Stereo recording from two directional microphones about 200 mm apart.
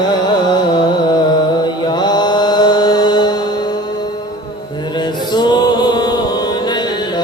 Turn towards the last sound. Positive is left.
turn(degrees=20)  # may be behind; listen again after turning